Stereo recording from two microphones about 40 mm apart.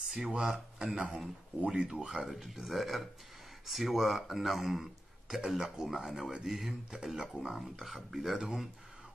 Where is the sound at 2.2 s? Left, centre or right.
Centre.